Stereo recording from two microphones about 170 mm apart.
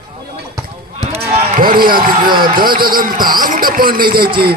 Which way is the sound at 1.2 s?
60° right (ahead or behind).